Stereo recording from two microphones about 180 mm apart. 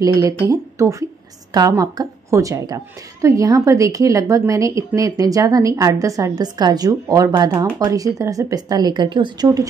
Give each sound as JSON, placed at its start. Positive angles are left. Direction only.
{"t": 0.0, "sound": "a woman's voice", "side_deg": -20}